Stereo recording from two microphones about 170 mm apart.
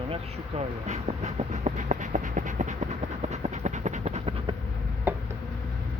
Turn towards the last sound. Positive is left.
turn(degrees=-10)  # may be behind; listen again after turning